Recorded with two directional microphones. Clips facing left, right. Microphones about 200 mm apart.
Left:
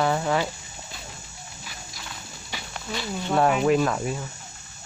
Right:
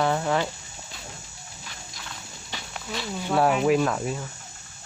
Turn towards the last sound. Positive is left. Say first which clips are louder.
# even
turn(degrees=0)  # may be behind; listen again after turning